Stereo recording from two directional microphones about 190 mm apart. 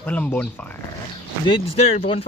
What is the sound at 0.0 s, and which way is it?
Music, 10° left (ahead or behind).